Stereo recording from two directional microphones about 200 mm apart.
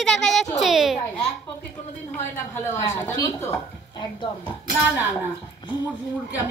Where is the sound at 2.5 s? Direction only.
10° left (ahead or behind).